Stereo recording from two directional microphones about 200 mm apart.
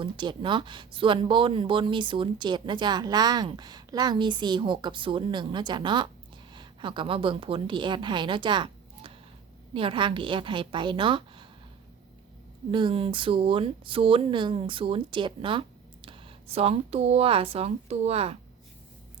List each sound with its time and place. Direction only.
0.0 s a woman's voice: 25° right (ahead or behind)
12.7 s speech: 25° right (ahead or behind)